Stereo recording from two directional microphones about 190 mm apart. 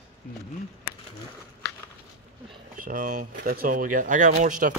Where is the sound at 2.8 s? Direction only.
45° right (ahead or behind).